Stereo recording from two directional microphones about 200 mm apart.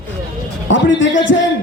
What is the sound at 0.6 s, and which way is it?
Speech, 70° left (ahead or behind).